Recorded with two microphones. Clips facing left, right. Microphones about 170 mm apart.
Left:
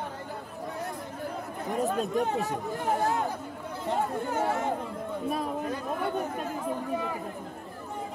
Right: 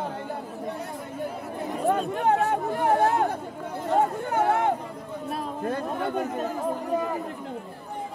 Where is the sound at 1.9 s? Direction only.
60° right (ahead or behind).